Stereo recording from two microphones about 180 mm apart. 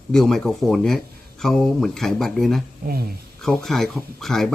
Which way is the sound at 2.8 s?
55° right (ahead or behind).